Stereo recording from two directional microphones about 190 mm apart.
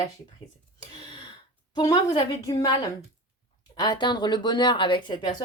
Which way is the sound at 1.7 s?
20° left (ahead or behind).